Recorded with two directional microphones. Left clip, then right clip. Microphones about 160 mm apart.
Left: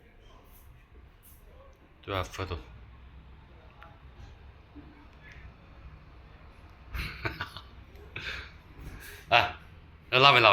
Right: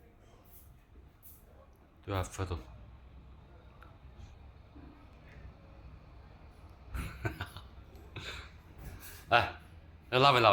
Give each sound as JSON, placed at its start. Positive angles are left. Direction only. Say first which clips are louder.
{"t": 2.0, "sound": "a man's voice", "louder": "left 4 dB", "side_deg": -20}
{"t": 6.9, "sound": "cough", "louder": "left 6 dB", "side_deg": -20}
{"t": 8.1, "sound": "a sound", "louder": "left 7 dB", "side_deg": -25}
{"t": 9.3, "sound": "a man's voice", "louder": "left 4 dB", "side_deg": -25}